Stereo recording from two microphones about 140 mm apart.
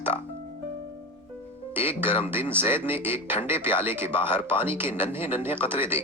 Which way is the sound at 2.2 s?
15° right (ahead or behind).